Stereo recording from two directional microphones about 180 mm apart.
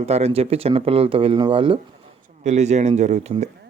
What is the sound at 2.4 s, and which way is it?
A man's voice, 40° right (ahead or behind).